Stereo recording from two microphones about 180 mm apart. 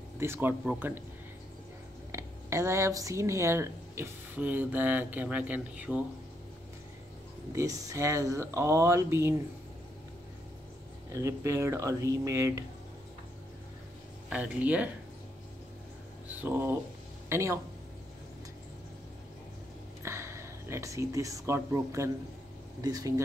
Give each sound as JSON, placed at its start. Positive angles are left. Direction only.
{"t": 0.2, "sound": "speech", "side_deg": -10}
{"t": 2.1, "sound": "speech", "side_deg": -15}
{"t": 7.5, "sound": "speech", "side_deg": -20}
{"t": 11.1, "sound": "speech", "side_deg": -15}
{"t": 14.3, "sound": "speech", "side_deg": -10}
{"t": 16.3, "sound": "speech", "side_deg": -10}
{"t": 20.0, "sound": "speech", "side_deg": -15}